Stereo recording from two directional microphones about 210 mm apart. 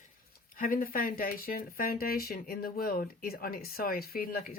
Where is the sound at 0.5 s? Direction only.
40° left (ahead or behind).